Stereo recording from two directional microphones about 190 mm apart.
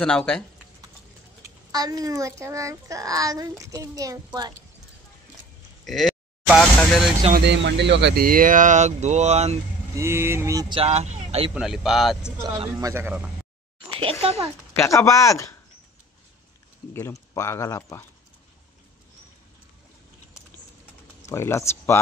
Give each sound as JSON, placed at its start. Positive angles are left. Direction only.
{"t": 0.0, "sound": "speech", "side_deg": 5}
{"t": 1.7, "sound": "a child's voice", "side_deg": -20}
{"t": 5.9, "sound": "speech", "side_deg": 0}
{"t": 7.3, "sound": "speech", "side_deg": -65}
{"t": 9.9, "sound": "a child's voice", "side_deg": -15}
{"t": 10.8, "sound": "speech", "side_deg": -35}
{"t": 11.5, "sound": "speech", "side_deg": 0}
{"t": 12.4, "sound": "a child's voice", "side_deg": -20}
{"t": 13.8, "sound": "a sound", "side_deg": -30}
{"t": 14.2, "sound": "speech", "side_deg": -30}
{"t": 14.8, "sound": "speech", "side_deg": 15}
{"t": 16.9, "sound": "speech", "side_deg": 15}
{"t": 21.3, "sound": "speech", "side_deg": 15}